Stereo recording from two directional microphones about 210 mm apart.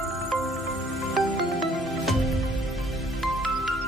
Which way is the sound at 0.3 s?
Centre (ahead or behind).